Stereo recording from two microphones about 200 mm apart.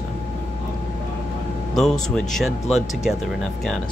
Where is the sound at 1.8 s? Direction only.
5° left (ahead or behind).